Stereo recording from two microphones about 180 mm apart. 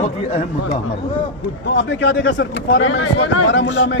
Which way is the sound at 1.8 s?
85° left.